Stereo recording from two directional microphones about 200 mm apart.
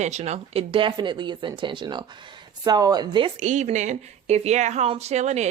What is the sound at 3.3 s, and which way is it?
A woman's voice, 35° right (ahead or behind).